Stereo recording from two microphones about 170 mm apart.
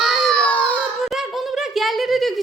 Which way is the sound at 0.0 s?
Centre (ahead or behind).